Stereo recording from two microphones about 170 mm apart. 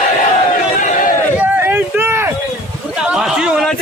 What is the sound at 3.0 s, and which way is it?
Speech, centre (ahead or behind).